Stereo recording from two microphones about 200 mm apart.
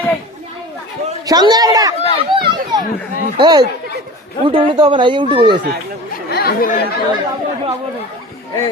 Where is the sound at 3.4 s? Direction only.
20° right (ahead or behind).